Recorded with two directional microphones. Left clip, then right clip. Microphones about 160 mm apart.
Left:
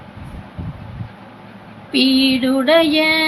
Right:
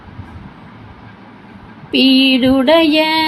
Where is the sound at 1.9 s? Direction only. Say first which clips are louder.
Right 4 dB; 25° right (ahead or behind).